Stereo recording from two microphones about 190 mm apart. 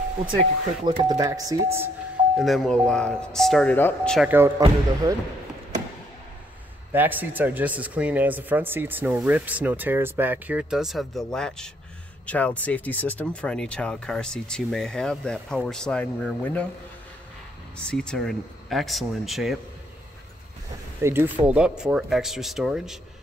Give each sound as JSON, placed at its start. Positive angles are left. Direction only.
{"t": 0.8, "sound": "speech", "side_deg": -20}
{"t": 2.3, "sound": "speech", "side_deg": 0}
{"t": 4.3, "sound": "speech", "side_deg": -15}
{"t": 6.9, "sound": "speech", "side_deg": -10}
{"t": 17.7, "sound": "speech", "side_deg": 5}
{"t": 21.0, "sound": "speech", "side_deg": -10}